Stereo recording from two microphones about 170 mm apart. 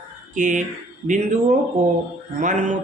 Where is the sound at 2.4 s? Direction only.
45° right (ahead or behind).